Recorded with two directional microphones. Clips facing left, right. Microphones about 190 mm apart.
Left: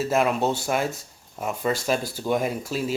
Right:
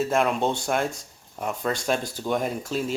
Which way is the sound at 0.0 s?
5° left (ahead or behind).